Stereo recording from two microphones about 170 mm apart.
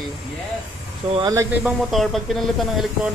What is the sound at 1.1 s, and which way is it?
Speech, 20° right (ahead or behind).